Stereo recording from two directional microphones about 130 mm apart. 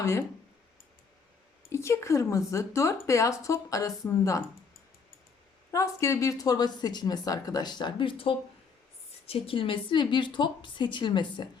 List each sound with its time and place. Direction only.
0.0 s a woman's voice: 20° left (ahead or behind)
1.7 s a woman's voice: 20° left (ahead or behind)
5.7 s speech: 25° left (ahead or behind)